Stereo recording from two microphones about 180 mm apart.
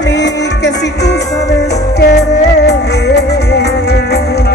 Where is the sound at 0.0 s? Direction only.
75° left (ahead or behind).